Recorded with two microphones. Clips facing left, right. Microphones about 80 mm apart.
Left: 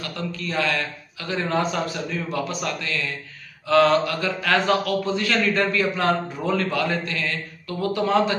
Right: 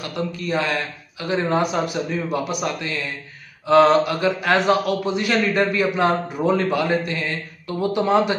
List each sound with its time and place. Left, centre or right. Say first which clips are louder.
0.0 s speech: right 4 dB; centre